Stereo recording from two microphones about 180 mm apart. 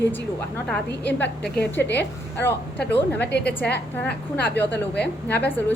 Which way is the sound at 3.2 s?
70° left (ahead or behind).